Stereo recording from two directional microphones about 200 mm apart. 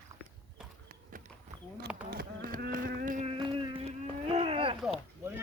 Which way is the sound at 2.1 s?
50° right (ahead or behind).